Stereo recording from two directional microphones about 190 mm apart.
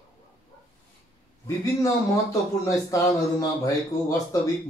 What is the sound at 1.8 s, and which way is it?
Speech, 15° left (ahead or behind).